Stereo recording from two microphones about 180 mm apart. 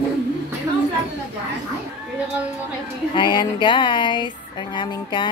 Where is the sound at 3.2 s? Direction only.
25° left (ahead or behind).